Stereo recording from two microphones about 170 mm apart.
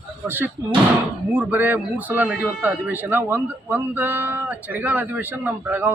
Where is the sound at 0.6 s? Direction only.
20° right (ahead or behind).